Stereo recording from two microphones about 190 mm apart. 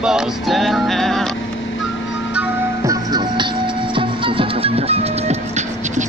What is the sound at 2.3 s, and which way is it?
Music, 20° right (ahead or behind).